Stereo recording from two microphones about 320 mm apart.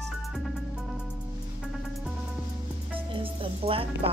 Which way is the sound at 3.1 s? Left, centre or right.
Centre.